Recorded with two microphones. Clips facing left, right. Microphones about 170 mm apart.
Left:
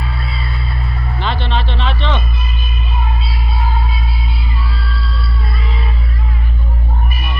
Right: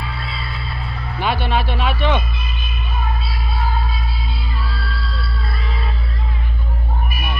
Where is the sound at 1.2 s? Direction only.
10° right (ahead or behind).